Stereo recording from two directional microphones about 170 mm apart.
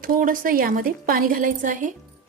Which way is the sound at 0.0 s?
55° right (ahead or behind).